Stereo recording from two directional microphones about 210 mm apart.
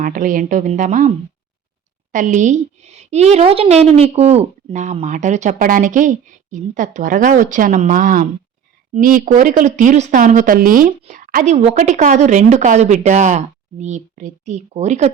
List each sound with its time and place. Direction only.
0.0 s speech: 40° right (ahead or behind)
2.1 s speech: 35° right (ahead or behind)